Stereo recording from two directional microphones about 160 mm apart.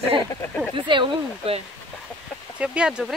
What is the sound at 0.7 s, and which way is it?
Speech, 30° right (ahead or behind).